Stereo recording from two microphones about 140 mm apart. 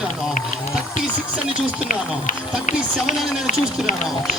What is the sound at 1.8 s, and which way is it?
Speech, 75° left (ahead or behind).